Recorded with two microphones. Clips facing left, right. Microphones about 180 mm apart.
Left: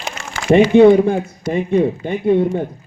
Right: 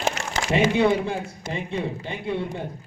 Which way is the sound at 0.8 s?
50° left (ahead or behind).